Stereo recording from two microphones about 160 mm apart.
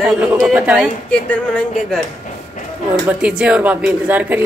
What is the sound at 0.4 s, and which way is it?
Speech, 10° right (ahead or behind).